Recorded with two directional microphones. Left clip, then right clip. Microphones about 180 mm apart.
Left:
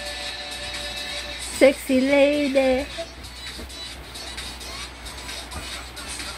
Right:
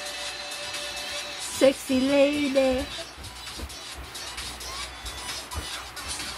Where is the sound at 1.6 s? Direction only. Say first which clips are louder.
Left 4 dB; 15° left (ahead or behind).